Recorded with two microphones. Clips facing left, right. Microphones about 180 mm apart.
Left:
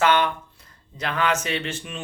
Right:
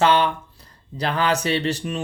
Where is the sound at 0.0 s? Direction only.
30° right (ahead or behind).